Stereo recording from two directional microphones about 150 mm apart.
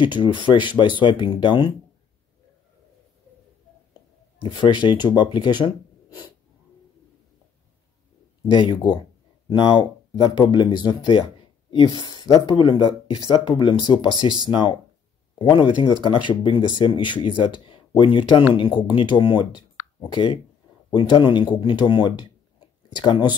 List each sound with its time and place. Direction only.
0.0 s speech: 30° left (ahead or behind)
4.4 s speech: 30° left (ahead or behind)
8.5 s speech: 30° left (ahead or behind)